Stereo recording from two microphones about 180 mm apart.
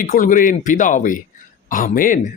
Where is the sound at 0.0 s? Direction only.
50° left (ahead or behind).